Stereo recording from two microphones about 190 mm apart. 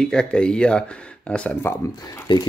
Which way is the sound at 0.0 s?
5° left (ahead or behind).